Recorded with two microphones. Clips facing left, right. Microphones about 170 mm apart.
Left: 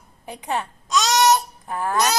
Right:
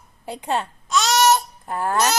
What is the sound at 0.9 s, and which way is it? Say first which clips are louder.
Babbling: even; 15° left (ahead or behind).